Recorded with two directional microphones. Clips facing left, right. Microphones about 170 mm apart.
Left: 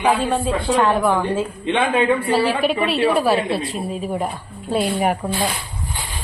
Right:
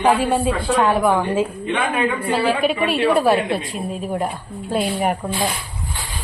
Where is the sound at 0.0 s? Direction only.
10° right (ahead or behind).